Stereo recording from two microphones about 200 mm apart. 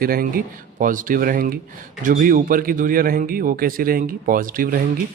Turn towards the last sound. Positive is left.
turn(degrees=-45)  # may be behind; listen again after turning